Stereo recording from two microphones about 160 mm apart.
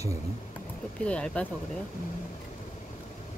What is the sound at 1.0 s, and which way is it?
Speech, 5° left (ahead or behind).